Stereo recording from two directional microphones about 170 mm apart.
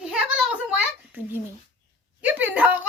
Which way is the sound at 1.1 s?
10° right (ahead or behind).